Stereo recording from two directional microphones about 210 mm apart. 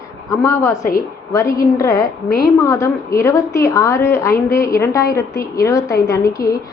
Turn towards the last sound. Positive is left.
turn(degrees=45)  # may be behind; listen again after turning